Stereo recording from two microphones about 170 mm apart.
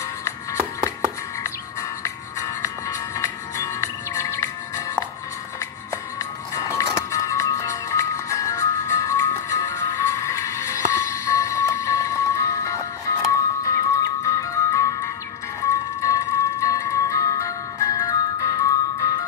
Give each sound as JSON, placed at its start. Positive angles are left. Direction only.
{"t": 1.4, "sound": "music", "side_deg": 15}
{"t": 6.1, "sound": "music", "side_deg": 20}